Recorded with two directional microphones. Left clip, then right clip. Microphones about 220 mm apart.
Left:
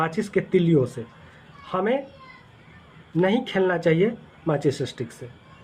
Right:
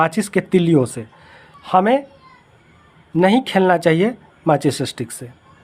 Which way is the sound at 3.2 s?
55° right (ahead or behind).